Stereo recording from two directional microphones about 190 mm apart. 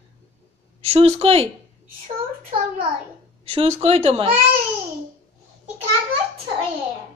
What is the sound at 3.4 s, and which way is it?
Speech, 35° right (ahead or behind).